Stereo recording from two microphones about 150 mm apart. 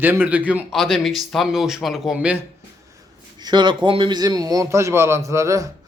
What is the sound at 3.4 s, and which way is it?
A man's voice, 30° right (ahead or behind).